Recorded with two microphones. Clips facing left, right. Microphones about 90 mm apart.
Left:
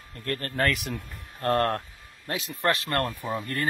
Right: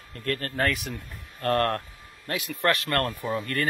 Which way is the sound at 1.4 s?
30° left (ahead or behind).